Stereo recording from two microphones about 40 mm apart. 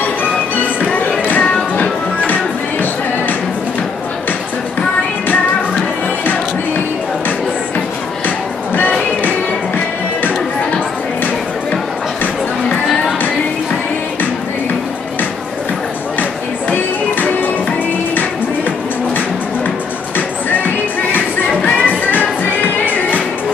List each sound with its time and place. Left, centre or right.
0.7 s music: left
16.7 s music: left
20.2 s music: left